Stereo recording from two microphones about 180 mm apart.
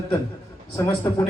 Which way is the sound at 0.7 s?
15° left (ahead or behind).